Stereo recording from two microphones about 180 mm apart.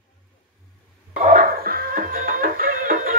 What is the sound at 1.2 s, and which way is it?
Music, 45° right (ahead or behind).